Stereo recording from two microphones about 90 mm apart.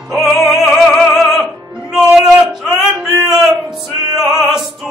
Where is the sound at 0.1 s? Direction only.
Centre (ahead or behind).